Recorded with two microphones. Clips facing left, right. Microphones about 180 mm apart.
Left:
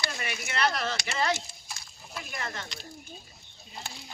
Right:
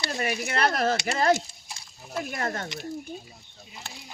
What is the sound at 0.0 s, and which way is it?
Speech, 40° right (ahead or behind).